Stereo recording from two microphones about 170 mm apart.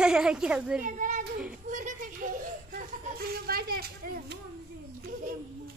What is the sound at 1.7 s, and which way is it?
Chuckle, 50° right (ahead or behind).